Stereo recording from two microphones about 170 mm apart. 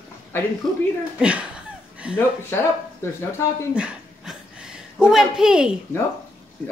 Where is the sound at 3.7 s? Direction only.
5° right (ahead or behind).